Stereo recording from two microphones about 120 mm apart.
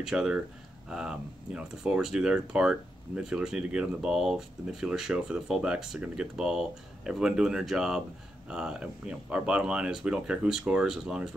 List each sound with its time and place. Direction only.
0.0 s speech: 5° right (ahead or behind)